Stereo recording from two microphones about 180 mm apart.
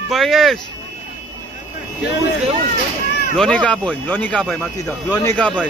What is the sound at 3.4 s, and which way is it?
Speech, 5° left (ahead or behind).